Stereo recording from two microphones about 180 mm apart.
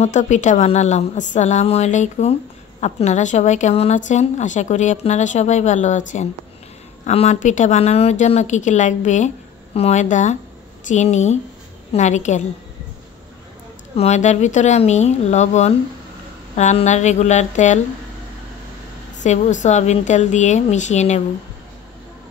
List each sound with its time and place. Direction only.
0.0 s a woman's voice: 40° left (ahead or behind)
13.9 s a woman's voice: 40° left (ahead or behind)
19.2 s a woman's voice: 40° left (ahead or behind)